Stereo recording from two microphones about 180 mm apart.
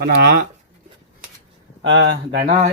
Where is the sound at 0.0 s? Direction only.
60° right (ahead or behind).